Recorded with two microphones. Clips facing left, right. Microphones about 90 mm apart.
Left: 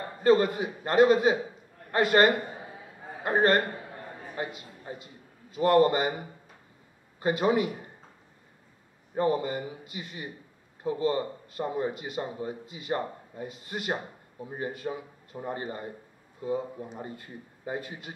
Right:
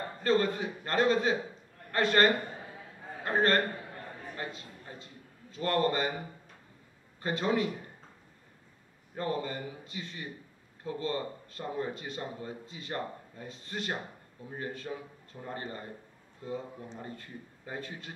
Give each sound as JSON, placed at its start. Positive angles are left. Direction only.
{"t": 0.2, "sound": "a man's voice", "side_deg": 15}
{"t": 7.2, "sound": "speech", "side_deg": 15}
{"t": 9.1, "sound": "speech", "side_deg": 15}